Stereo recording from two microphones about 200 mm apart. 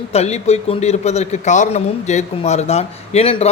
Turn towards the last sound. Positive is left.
turn(degrees=30)  # may be behind; listen again after turning